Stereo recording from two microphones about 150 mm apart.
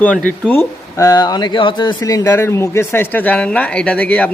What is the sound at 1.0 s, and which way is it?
A man's voice, 25° left (ahead or behind).